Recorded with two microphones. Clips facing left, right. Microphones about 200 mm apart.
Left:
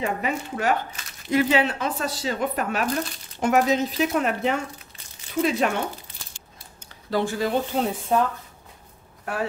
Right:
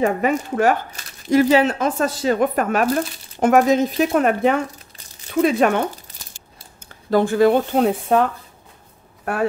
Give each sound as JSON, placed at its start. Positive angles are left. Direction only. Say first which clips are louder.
{"t": 0.0, "sound": "speech", "louder": "right 8 dB", "side_deg": -50}
{"t": 7.1, "sound": "speech", "louder": "right 9 dB", "side_deg": -50}
{"t": 9.2, "sound": "speech", "louder": "right 7 dB", "side_deg": -55}